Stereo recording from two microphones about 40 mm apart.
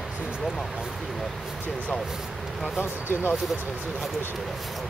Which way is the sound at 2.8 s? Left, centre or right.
Left.